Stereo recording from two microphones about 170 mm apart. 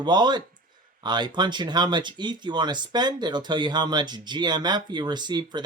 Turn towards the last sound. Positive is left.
turn(degrees=-25)  # may be behind; listen again after turning